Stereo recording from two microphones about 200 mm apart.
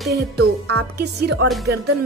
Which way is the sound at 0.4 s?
90° right.